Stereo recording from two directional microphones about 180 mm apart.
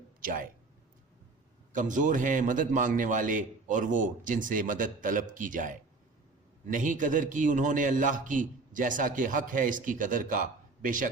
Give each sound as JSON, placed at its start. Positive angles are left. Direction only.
{"t": 0.2, "sound": "speech", "side_deg": -50}
{"t": 1.7, "sound": "a man's voice", "side_deg": -45}